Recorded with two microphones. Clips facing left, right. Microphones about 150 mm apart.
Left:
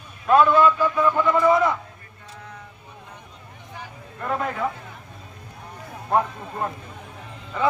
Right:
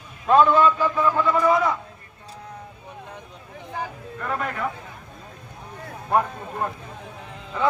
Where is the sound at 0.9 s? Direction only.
15° left (ahead or behind).